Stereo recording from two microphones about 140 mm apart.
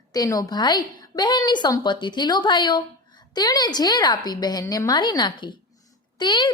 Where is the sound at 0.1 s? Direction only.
25° left (ahead or behind).